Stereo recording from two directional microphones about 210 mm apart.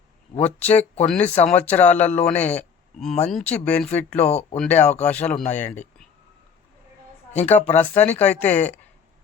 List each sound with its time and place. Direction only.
0.4 s speech: 5° left (ahead or behind)
4.3 s speech: 30° left (ahead or behind)
4.5 s speech: 5° left (ahead or behind)
7.3 s speech: 10° left (ahead or behind)